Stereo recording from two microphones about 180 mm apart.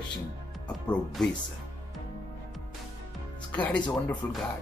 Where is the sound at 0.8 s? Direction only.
5° left (ahead or behind).